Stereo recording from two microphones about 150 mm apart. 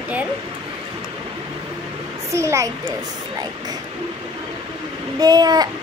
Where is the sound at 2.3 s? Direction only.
20° right (ahead or behind).